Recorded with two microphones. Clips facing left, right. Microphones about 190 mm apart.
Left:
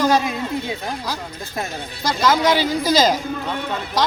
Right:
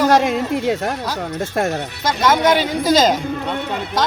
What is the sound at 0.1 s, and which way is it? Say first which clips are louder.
Speech: right 4 dB; 75° right (ahead or behind).